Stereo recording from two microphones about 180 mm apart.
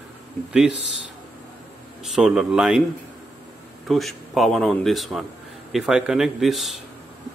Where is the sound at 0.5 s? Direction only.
5° right (ahead or behind).